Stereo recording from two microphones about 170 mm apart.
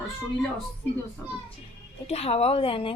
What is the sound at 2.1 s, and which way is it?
Speech, 35° left (ahead or behind).